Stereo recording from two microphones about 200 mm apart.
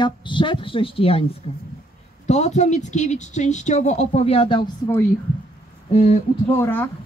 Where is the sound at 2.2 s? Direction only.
35° left (ahead or behind).